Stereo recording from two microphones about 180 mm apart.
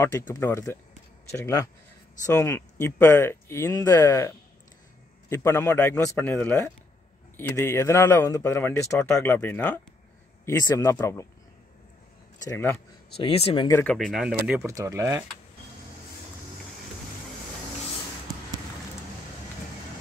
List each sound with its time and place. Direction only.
0.3 s speech: 15° left (ahead or behind)
12.4 s speech: 10° left (ahead or behind)
13.2 s speech: 35° left (ahead or behind)
13.7 s speech: 15° left (ahead or behind)
13.9 s speech: centre (ahead or behind)
14.3 s speech: 15° right (ahead or behind)